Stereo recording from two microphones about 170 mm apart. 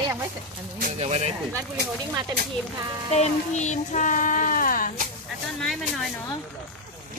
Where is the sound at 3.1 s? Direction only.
45° left (ahead or behind).